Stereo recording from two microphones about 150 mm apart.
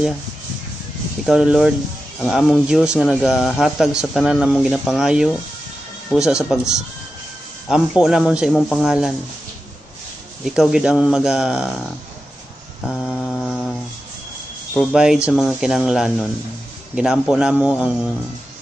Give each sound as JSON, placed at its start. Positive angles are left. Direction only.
{"t": 1.2, "sound": "a man's voice", "side_deg": -5}
{"t": 10.4, "sound": "a man's voice", "side_deg": -5}
{"t": 12.8, "sound": "mantra", "side_deg": 5}
{"t": 14.7, "sound": "a man's voice", "side_deg": 0}